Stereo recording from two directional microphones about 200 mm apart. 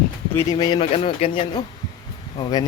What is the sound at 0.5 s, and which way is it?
Speech, 25° left (ahead or behind).